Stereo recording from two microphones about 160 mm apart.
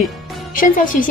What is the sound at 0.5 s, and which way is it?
Speech, 55° left (ahead or behind).